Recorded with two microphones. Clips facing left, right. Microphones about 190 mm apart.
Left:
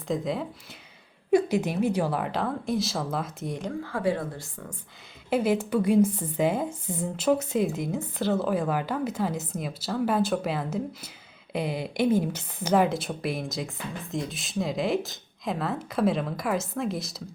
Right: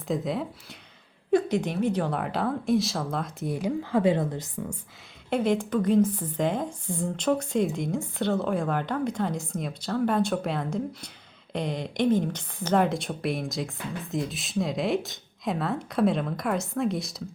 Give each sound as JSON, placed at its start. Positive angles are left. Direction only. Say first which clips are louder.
{"t": 0.1, "sound": "a woman's voice", "louder": "even", "side_deg": 0}
{"t": 1.3, "sound": "a woman's voice", "louder": "left 1 dB", "side_deg": 10}
{"t": 3.7, "sound": "a woman's voice", "louder": "right 4 dB", "side_deg": -20}
{"t": 5.3, "sound": "a woman's voice", "louder": "left 1 dB", "side_deg": 5}